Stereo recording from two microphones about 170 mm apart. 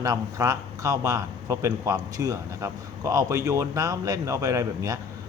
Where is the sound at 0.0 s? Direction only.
20° right (ahead or behind).